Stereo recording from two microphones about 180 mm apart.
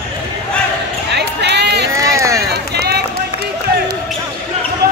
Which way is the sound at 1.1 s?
70° right (ahead or behind).